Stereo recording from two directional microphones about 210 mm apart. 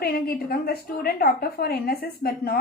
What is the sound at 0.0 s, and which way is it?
A woman's voice, 45° left (ahead or behind).